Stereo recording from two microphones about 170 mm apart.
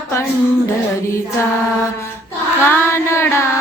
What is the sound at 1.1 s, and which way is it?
Mantra, 15° left (ahead or behind).